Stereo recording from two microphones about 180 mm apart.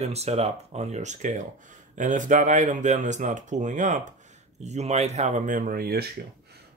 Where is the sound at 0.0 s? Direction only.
35° right (ahead or behind).